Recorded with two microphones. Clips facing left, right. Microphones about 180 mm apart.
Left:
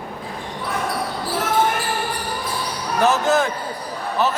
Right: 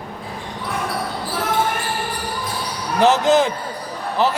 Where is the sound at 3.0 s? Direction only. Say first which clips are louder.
Right 3 dB; 20° right (ahead or behind).